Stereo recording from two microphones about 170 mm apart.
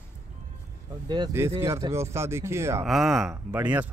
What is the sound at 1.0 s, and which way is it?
Speech, 25° right (ahead or behind).